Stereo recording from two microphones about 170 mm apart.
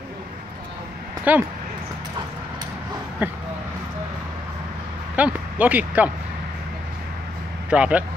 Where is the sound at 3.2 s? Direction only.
10° right (ahead or behind).